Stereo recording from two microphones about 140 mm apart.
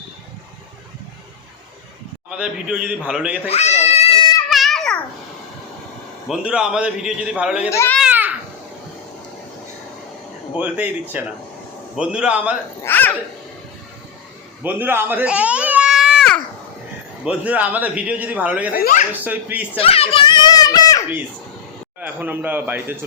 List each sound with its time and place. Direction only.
2.4 s a man's voice: 5° right (ahead or behind)
3.5 s cat: 55° left (ahead or behind)
4.4 s babbling: centre (ahead or behind)
6.2 s a man's voice: 5° right (ahead or behind)
7.7 s a child's voice: 20° left (ahead or behind)
8.1 s babbling: 15° right (ahead or behind)
10.6 s a man's voice: 10° right (ahead or behind)
12.8 s a child's voice: 15° left (ahead or behind)
14.6 s baby cry: 15° right (ahead or behind); by 16.4 s centre (ahead or behind)
17.2 s a man's voice: 10° right (ahead or behind)
18.7 s speech: 90° left
19.2 s a man's voice: 15° right (ahead or behind)
19.7 s children playing: 45° left (ahead or behind); by 21.0 s 25° left (ahead or behind)
22.0 s a man's voice: 10° right (ahead or behind)